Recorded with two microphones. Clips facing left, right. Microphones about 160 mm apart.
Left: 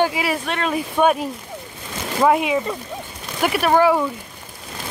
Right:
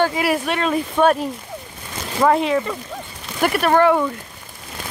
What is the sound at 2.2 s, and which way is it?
Speech, 10° left (ahead or behind).